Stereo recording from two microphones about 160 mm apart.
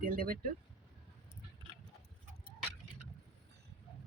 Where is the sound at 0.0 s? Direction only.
65° right (ahead or behind).